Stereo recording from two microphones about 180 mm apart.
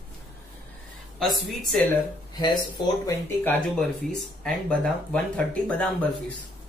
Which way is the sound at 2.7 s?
15° left (ahead or behind).